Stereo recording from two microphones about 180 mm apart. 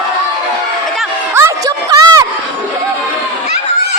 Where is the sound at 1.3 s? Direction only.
15° right (ahead or behind).